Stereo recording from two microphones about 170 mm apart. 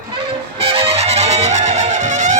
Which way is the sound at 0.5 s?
35° right (ahead or behind).